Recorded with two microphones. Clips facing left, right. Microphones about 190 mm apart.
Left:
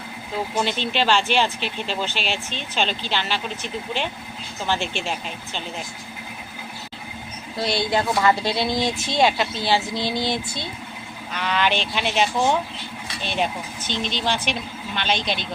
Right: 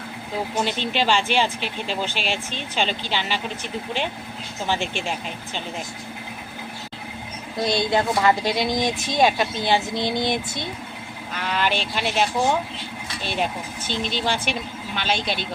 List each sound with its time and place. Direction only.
0.6 s speech: 10° right (ahead or behind)
7.5 s a woman's voice: 20° right (ahead or behind)
11.3 s speech: 5° right (ahead or behind)